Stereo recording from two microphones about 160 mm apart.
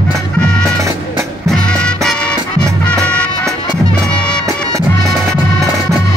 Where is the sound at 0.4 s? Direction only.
5° left (ahead or behind).